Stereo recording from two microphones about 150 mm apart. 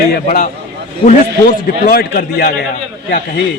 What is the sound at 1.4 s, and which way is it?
A man's voice, 90° left.